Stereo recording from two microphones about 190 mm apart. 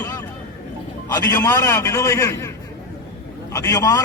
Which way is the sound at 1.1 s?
20° left (ahead or behind).